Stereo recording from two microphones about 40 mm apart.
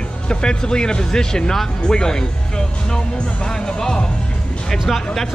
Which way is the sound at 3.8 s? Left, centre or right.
Centre.